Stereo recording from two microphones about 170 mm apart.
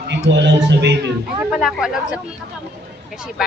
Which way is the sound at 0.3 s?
90° right.